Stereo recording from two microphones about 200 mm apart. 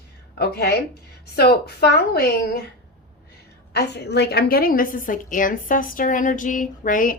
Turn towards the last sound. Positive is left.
turn(degrees=40)  # may be behind; listen again after turning